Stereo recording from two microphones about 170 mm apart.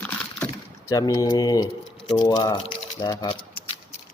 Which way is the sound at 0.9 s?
20° left (ahead or behind).